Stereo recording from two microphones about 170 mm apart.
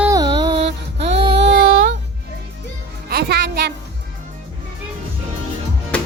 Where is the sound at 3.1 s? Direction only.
75° right (ahead or behind).